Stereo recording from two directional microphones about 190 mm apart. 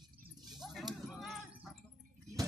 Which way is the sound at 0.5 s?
Centre (ahead or behind).